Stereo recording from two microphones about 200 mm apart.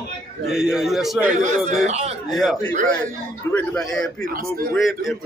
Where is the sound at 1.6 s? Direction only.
35° right (ahead or behind).